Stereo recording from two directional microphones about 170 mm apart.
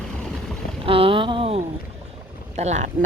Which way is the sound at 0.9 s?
30° right (ahead or behind).